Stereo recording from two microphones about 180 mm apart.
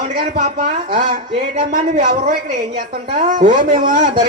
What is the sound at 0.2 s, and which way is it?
Speech, 45° right (ahead or behind).